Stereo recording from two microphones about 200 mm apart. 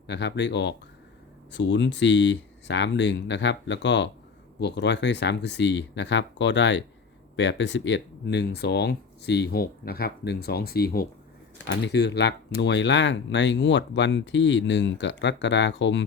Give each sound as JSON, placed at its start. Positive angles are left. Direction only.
{"t": 0.1, "sound": "speech", "side_deg": 60}
{"t": 11.5, "sound": "speech", "side_deg": 60}